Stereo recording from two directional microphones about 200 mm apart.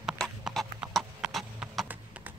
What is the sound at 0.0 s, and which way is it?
Clip-clop, 5° right (ahead or behind).